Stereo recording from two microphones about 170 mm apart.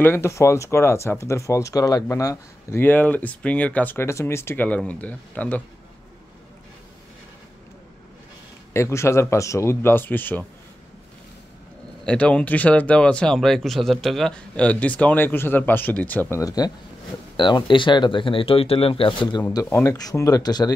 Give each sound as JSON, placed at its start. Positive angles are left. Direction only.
{"t": 0.0, "sound": "speech", "side_deg": 15}
{"t": 8.7, "sound": "speech", "side_deg": 15}
{"t": 12.0, "sound": "speech", "side_deg": 5}
{"t": 19.5, "sound": "speech", "side_deg": 15}